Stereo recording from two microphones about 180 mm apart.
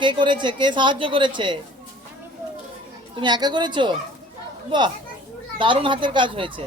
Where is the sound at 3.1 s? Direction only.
25° right (ahead or behind).